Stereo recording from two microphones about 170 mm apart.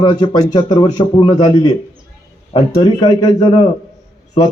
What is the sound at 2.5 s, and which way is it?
Speech, 30° left (ahead or behind).